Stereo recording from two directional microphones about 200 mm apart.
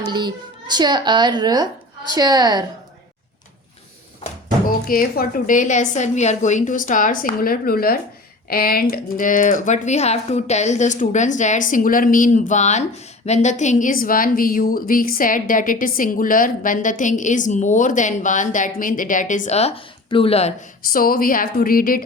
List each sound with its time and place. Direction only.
0.0 s a child's voice: 20° right (ahead or behind)
4.9 s a woman's voice: 45° left (ahead or behind); by 20.5 s 30° left (ahead or behind)
20.9 s a woman's voice: 45° left (ahead or behind)